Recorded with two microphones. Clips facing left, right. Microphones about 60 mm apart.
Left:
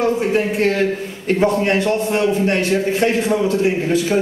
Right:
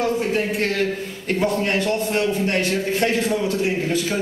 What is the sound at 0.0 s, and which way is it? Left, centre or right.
A man's voice, centre.